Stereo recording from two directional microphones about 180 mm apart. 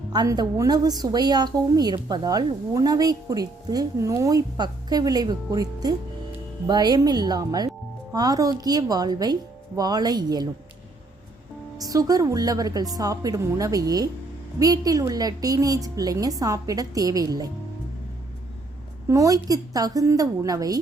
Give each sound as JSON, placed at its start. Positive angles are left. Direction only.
{"t": 0.1, "sound": "a woman's voice", "side_deg": -20}
{"t": 11.8, "sound": "a woman's voice", "side_deg": -20}
{"t": 19.0, "sound": "a woman's voice", "side_deg": -20}